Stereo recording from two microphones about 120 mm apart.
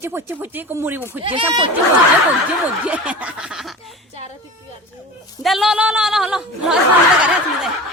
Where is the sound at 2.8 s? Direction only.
10° right (ahead or behind).